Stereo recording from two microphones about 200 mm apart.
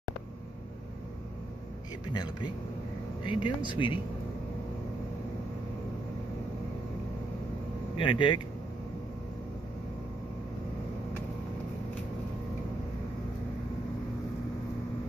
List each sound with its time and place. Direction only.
2.1 s speech: 20° left (ahead or behind)
7.9 s speech: 25° left (ahead or behind)